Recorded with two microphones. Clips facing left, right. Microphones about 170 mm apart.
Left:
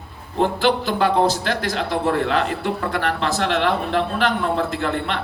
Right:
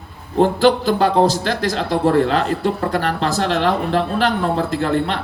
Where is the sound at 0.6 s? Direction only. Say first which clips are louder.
Right 4 dB; 40° right (ahead or behind).